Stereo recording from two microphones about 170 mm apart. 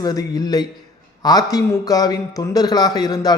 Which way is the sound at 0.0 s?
25° left (ahead or behind).